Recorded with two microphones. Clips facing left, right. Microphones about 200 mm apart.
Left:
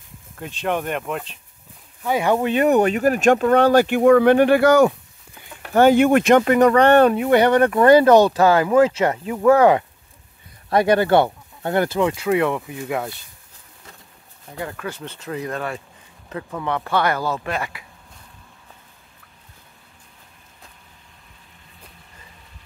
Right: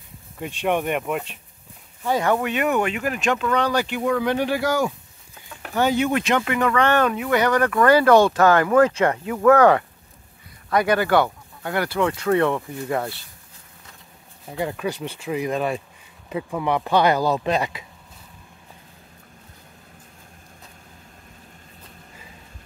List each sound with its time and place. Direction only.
0.4 s speech: 10° right (ahead or behind)
2.0 s speech: 10° left (ahead or behind)
2.3 s speech: 30° left (ahead or behind); by 4.9 s 65° left (ahead or behind)
5.8 s speech: 55° left (ahead or behind); by 9.8 s 15° left (ahead or behind)
10.7 s speech: 25° left (ahead or behind); by 13.1 s 5° left (ahead or behind)
14.6 s speech: 20° right (ahead or behind)